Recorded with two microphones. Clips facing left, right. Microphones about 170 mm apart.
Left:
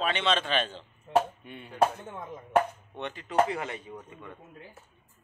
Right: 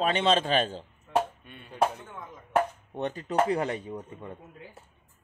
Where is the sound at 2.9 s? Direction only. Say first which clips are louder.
Even; 40° right (ahead or behind).